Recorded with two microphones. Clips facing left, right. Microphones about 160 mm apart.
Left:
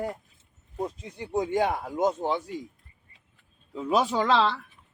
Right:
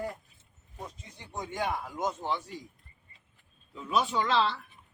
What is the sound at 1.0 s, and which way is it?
Speech, 65° left (ahead or behind).